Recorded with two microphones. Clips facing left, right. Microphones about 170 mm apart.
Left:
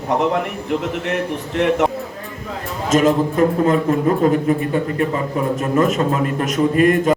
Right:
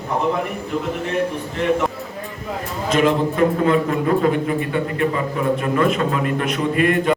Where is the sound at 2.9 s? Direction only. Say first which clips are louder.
Left 2 dB; 40° left (ahead or behind).